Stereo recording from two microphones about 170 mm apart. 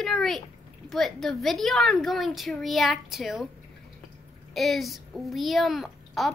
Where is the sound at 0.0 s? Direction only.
Centre (ahead or behind).